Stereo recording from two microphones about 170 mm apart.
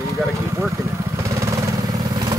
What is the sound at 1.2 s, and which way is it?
Vehicle, 15° right (ahead or behind).